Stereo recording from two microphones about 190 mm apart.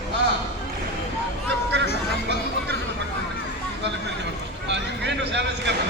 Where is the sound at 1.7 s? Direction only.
65° right (ahead or behind).